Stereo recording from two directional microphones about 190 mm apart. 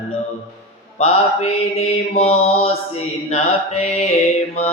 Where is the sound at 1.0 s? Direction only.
35° left (ahead or behind).